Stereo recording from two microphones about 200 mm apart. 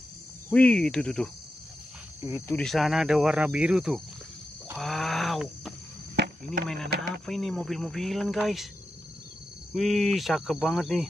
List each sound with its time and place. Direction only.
0.5 s cricket: 5° left (ahead or behind)
2.4 s cricket: 5° left (ahead or behind)
4.7 s wild animals: centre (ahead or behind)
6.1 s a sound: 55° right (ahead or behind)
7.2 s cricket: centre (ahead or behind)
9.8 s cricket: centre (ahead or behind)